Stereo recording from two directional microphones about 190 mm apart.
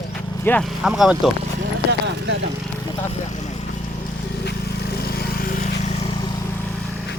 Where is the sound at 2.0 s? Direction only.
65° right (ahead or behind).